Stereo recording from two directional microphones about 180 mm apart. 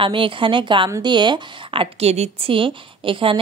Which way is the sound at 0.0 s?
30° right (ahead or behind).